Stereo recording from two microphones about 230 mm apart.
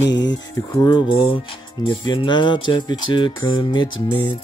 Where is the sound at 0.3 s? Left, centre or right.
Centre.